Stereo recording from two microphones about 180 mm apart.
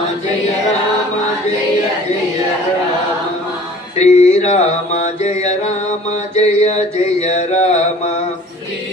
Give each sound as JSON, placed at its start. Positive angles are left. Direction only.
{"t": 3.9, "sound": "mantra", "side_deg": 40}